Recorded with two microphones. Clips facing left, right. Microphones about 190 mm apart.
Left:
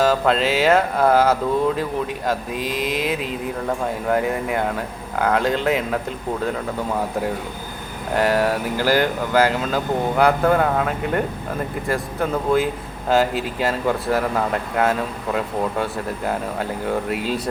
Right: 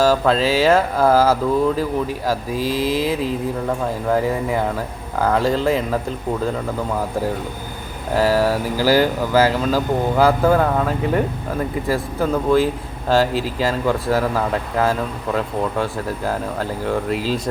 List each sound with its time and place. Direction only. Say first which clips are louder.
0.0 s speech: right 2 dB; centre (ahead or behind)
2.6 s a sound: right 4 dB; 30° right (ahead or behind)
4.1 s speech: right 2 dB; centre (ahead or behind)
8.1 s speech: right 2 dB; centre (ahead or behind)